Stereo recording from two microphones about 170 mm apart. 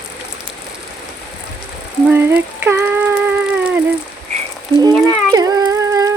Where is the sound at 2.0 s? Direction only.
10° right (ahead or behind).